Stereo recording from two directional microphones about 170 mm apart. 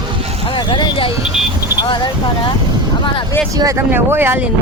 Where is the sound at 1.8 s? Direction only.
25° left (ahead or behind).